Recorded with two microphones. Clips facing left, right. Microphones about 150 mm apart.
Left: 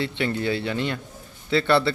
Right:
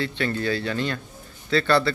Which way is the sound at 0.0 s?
20° left (ahead or behind).